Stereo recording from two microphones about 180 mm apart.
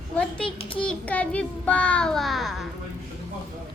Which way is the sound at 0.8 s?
5° left (ahead or behind).